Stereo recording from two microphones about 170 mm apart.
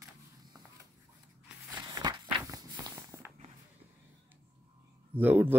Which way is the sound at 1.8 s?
25° right (ahead or behind).